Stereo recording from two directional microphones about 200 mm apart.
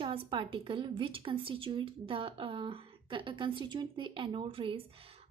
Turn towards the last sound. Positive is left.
turn(degrees=-30)  # may be behind; listen again after turning